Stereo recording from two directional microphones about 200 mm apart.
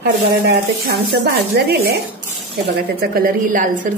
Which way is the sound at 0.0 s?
55° right (ahead or behind).